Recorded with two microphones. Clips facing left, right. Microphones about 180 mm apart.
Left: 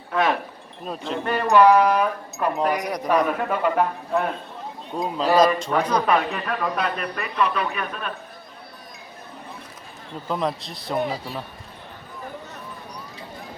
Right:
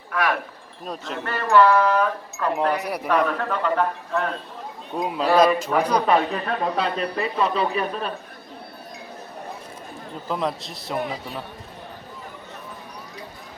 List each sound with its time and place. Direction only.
0.1 s speech: 25° left (ahead or behind)
2.8 s speech: 10° right (ahead or behind)
3.1 s speech: 10° left (ahead or behind)
4.9 s speech: 10° right (ahead or behind)
6.1 s speech: 30° right (ahead or behind)
10.2 s a man's voice: centre (ahead or behind)